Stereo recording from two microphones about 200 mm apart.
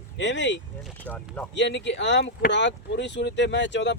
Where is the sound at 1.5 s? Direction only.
60° left (ahead or behind).